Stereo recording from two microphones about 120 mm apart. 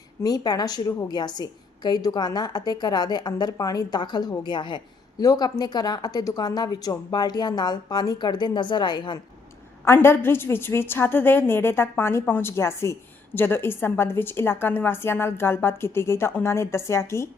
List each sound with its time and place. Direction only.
0.2 s a woman's voice: 30° left (ahead or behind)
9.8 s a woman's voice: 20° left (ahead or behind)